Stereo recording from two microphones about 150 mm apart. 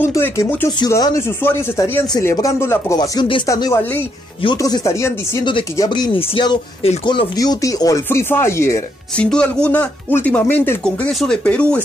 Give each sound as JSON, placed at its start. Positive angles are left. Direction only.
{"t": 0.0, "sound": "a sound", "side_deg": 20}
{"t": 0.7, "sound": "speech", "side_deg": 25}
{"t": 3.0, "sound": "speech", "side_deg": 30}
{"t": 5.4, "sound": "speech", "side_deg": 35}
{"t": 9.1, "sound": "speech", "side_deg": 5}